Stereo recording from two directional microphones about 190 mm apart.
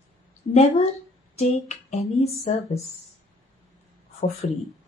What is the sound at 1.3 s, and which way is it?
Speech, 35° left (ahead or behind).